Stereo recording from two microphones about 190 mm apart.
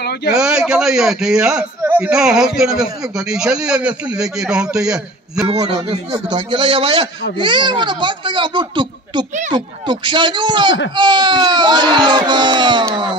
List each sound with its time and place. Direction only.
0.3 s a man's voice: 5° right (ahead or behind)
6.3 s speech: 25° right (ahead or behind)